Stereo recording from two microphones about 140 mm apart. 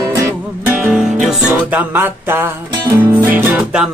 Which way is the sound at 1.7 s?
15° right (ahead or behind).